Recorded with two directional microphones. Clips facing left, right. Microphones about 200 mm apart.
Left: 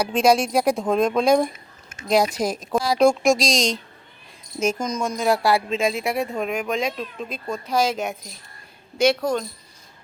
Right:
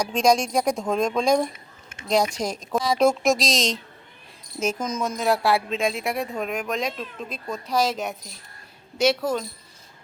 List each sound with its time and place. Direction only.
0.0 s speech: 5° left (ahead or behind)